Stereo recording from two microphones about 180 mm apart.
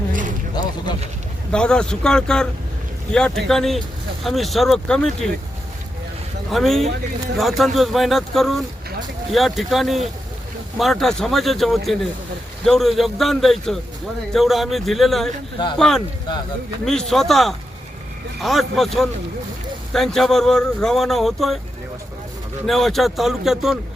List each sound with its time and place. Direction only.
0.1 s vehicle: 45° right (ahead or behind)
1.5 s speech: 5° left (ahead or behind)
6.5 s speech: centre (ahead or behind)
22.6 s speech: centre (ahead or behind)